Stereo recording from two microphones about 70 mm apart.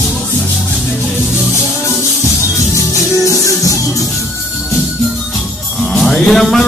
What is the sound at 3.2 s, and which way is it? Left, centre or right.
Music, left.